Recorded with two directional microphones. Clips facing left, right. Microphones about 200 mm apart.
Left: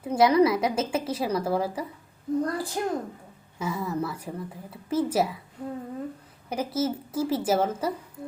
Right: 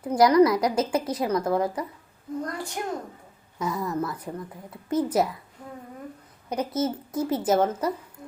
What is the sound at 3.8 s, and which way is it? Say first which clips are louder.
Speech: right 1 dB; 10° left (ahead or behind).